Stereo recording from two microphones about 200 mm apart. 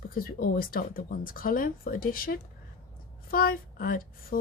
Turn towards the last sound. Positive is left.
turn(degrees=45)  # may be behind; listen again after turning